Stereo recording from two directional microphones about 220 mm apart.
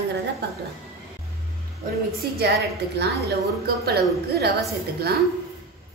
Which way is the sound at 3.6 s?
45° right (ahead or behind).